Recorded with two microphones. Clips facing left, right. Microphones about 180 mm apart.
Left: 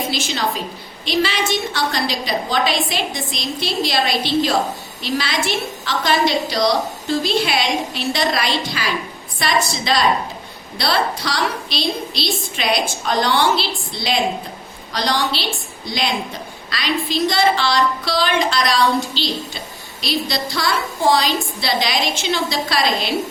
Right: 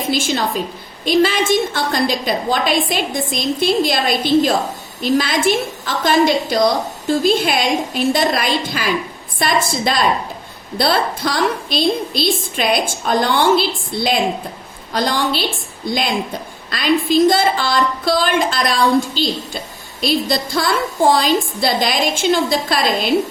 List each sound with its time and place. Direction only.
0.1 s a woman's voice: 50° right (ahead or behind)